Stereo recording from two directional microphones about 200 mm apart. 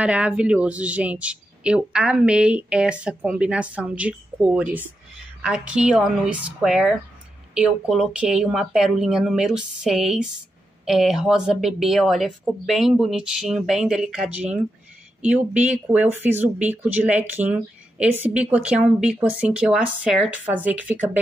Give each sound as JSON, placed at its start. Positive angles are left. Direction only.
{"t": 0.0, "sound": "speech", "side_deg": -5}